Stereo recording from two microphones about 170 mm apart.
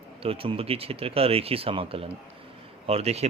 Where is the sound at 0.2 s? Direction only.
35° right (ahead or behind).